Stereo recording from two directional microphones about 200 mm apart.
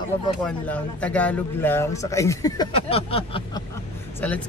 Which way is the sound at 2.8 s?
30° left (ahead or behind).